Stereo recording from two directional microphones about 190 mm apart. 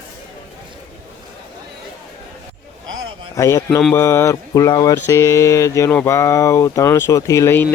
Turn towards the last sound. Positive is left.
turn(degrees=15)  # may be behind; listen again after turning